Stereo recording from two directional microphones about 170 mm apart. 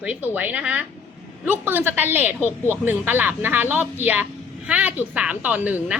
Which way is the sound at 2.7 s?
10° right (ahead or behind).